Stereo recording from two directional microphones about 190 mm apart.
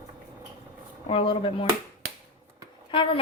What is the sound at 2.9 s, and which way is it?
Speech, 25° left (ahead or behind).